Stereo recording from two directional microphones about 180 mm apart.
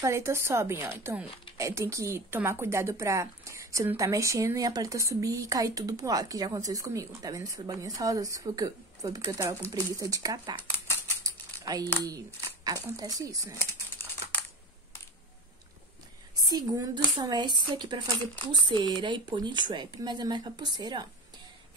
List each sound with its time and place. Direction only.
0.0 s a woman's voice: 15° right (ahead or behind)
10.7 s typewriter: 10° left (ahead or behind)
11.2 s crumpling: 20° right (ahead or behind)
12.6 s speech: 20° right (ahead or behind)
16.4 s speech: 20° right (ahead or behind)